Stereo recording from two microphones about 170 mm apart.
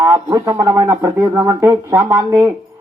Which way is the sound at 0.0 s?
20° right (ahead or behind).